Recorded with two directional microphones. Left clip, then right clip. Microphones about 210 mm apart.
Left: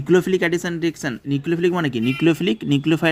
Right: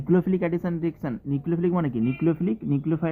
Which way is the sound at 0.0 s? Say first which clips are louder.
Left 7 dB; 30° left (ahead or behind).